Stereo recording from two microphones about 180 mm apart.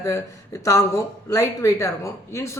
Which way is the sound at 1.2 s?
15° left (ahead or behind).